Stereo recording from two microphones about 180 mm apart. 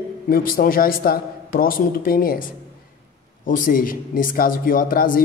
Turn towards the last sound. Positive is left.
turn(degrees=50)  # may be behind; listen again after turning